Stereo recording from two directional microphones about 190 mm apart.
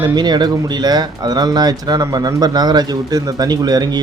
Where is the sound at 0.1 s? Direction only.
20° right (ahead or behind).